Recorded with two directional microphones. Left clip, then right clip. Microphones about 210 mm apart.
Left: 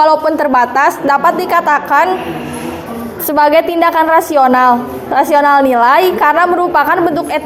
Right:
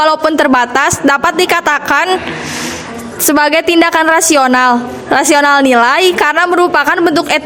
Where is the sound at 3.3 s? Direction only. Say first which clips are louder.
Even; 45° right (ahead or behind).